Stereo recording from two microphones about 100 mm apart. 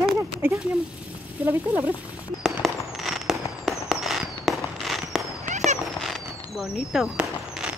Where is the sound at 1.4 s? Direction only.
20° right (ahead or behind).